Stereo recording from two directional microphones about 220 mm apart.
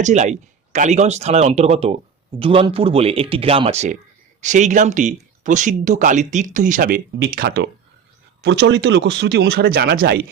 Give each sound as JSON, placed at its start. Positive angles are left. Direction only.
{"t": 0.0, "sound": "speech", "side_deg": -30}